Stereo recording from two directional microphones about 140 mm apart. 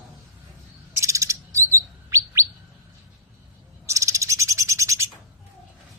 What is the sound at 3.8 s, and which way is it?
Bird, 20° right (ahead or behind).